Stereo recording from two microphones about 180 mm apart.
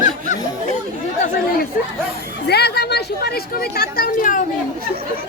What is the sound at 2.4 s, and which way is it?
Speech, 65° left (ahead or behind).